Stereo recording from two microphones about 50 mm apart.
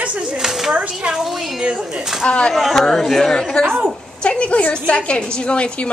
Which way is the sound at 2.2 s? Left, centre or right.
Left.